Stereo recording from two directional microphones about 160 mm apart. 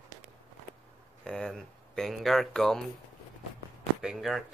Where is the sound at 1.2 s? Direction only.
5° left (ahead or behind).